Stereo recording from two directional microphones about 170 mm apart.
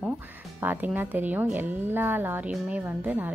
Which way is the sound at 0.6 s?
10° right (ahead or behind).